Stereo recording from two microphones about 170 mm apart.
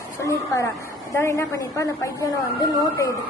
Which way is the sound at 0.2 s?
15° left (ahead or behind).